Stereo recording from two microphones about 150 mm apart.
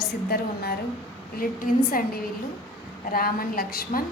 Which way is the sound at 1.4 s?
70° left (ahead or behind).